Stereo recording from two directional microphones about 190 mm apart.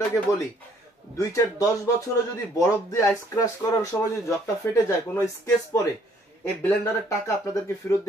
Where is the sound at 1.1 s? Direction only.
15° left (ahead or behind).